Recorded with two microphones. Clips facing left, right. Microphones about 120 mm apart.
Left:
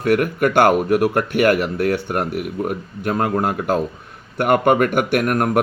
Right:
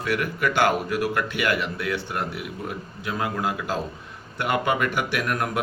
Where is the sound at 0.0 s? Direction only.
55° left (ahead or behind).